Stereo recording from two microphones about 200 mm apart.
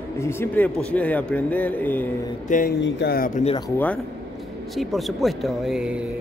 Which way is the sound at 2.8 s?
55° left (ahead or behind).